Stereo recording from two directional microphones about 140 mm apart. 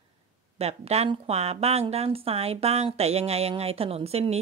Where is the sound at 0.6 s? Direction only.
50° right (ahead or behind).